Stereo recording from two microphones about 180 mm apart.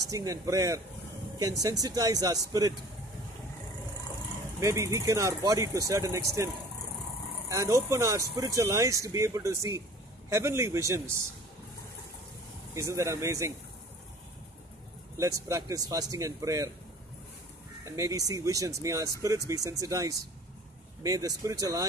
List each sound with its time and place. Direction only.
0.1 s speech: 20° right (ahead or behind)
4.6 s speech: 15° right (ahead or behind)
12.7 s speech: 15° right (ahead or behind)
15.1 s speech: 15° right (ahead or behind)
17.8 s speech: 15° right (ahead or behind)